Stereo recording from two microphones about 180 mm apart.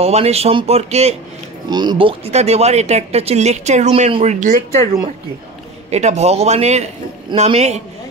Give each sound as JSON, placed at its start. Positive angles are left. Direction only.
{"t": 0.0, "sound": "speech", "side_deg": -35}
{"t": 1.7, "sound": "speech", "side_deg": -25}
{"t": 5.9, "sound": "speech", "side_deg": -40}